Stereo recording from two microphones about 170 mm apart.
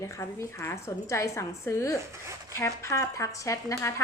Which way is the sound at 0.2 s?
15° left (ahead or behind).